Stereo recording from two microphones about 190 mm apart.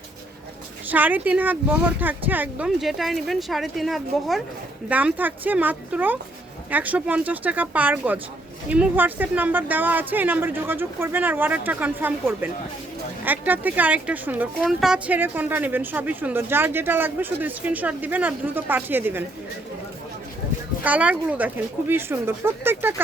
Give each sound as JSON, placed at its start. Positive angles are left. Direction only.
{"t": 0.9, "sound": "speech", "side_deg": -10}
{"t": 20.8, "sound": "speech", "side_deg": -10}